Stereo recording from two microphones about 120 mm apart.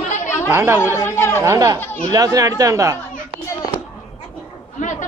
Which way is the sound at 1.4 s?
25° right (ahead or behind).